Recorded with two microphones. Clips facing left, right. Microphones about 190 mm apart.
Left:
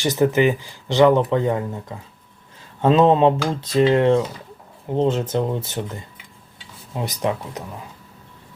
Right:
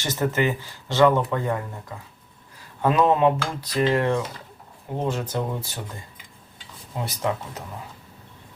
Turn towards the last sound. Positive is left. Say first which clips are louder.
# left 3 dB
turn(degrees=20)  # may be behind; listen again after turning